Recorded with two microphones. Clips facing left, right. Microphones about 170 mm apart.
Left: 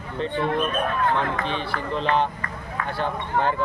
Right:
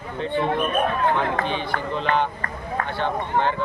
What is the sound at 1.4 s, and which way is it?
Speech, centre (ahead or behind).